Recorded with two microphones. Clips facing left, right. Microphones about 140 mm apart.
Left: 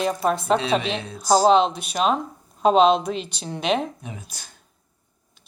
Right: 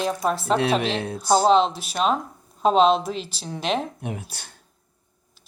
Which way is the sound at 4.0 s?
65° right (ahead or behind).